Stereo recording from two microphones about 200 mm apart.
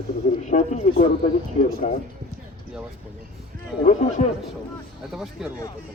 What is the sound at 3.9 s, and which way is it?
Speech, 35° left (ahead or behind).